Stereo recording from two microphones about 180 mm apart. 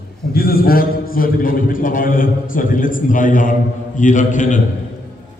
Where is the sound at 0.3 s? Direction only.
55° left (ahead or behind).